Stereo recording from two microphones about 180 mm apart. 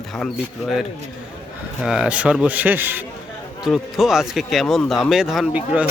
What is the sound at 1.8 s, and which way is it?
A man's voice, 5° right (ahead or behind).